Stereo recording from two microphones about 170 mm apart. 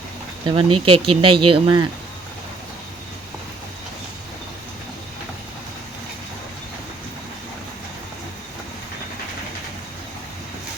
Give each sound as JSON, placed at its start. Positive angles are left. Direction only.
{"t": 0.4, "sound": "speech", "side_deg": -30}